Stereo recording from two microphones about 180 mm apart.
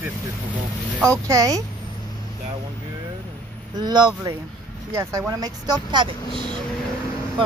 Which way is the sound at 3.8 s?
25° right (ahead or behind).